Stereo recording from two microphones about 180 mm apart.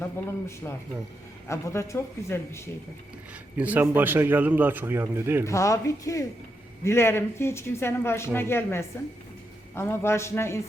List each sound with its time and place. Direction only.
0.0 s speech: 10° left (ahead or behind)
3.6 s a man's voice: 10° right (ahead or behind)
5.5 s speech: 15° left (ahead or behind)